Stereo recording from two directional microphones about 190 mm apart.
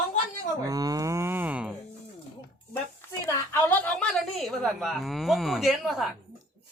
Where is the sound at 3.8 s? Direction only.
5° left (ahead or behind).